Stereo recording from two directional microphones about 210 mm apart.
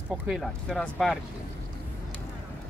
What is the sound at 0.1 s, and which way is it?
Speech, centre (ahead or behind).